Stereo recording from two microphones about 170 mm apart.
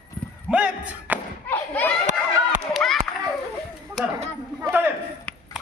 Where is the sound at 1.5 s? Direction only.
10° left (ahead or behind).